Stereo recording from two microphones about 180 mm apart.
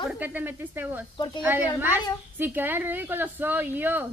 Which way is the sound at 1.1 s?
25° left (ahead or behind).